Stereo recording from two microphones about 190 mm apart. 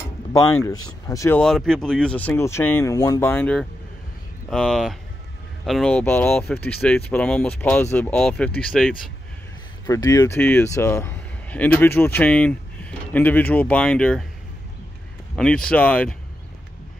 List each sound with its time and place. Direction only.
0.3 s speech: 15° left (ahead or behind)
1.4 s speech: 5° left (ahead or behind)
9.8 s speech: 20° left (ahead or behind)
15.3 s speech: 5° left (ahead or behind)